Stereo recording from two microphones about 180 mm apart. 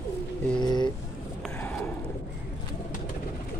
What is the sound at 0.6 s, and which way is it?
Speech, 25° left (ahead or behind).